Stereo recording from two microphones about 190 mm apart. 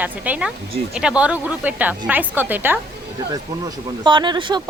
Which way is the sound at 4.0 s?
25° right (ahead or behind).